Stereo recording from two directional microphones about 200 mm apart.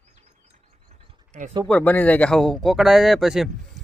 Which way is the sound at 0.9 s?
35° right (ahead or behind).